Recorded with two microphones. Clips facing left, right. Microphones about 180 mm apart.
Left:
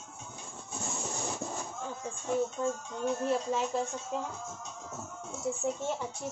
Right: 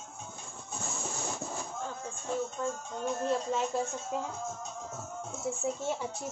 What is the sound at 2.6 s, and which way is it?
Speech, 15° left (ahead or behind).